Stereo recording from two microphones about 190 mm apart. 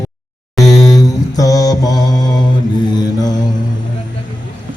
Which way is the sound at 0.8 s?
20° left (ahead or behind).